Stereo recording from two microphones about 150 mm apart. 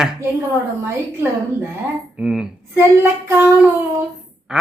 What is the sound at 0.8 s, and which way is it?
Child singing, 15° right (ahead or behind).